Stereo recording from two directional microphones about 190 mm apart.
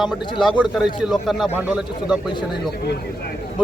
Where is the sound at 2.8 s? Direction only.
60° left (ahead or behind).